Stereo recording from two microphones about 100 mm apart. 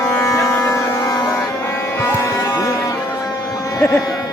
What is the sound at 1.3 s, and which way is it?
Music, 25° left (ahead or behind).